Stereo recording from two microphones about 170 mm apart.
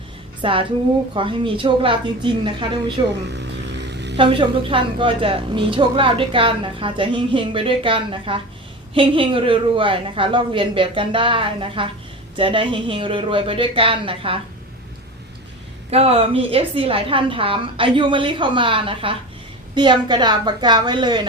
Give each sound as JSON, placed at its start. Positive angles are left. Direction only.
{"t": 0.4, "sound": "a woman's voice", "side_deg": -30}
{"t": 3.2, "sound": "vehicle", "side_deg": -90}
{"t": 4.2, "sound": "a woman's voice", "side_deg": -30}
{"t": 15.9, "sound": "a woman's voice", "side_deg": -35}